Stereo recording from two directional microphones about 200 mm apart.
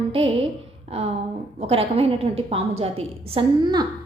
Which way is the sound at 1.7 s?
30° right (ahead or behind).